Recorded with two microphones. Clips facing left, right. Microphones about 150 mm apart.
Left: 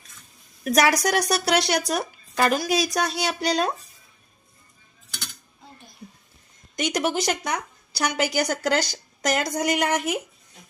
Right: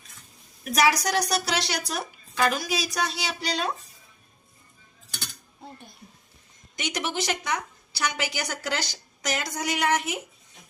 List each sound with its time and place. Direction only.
0.6 s a woman's voice: 45° left (ahead or behind)
6.7 s a woman's voice: 45° left (ahead or behind)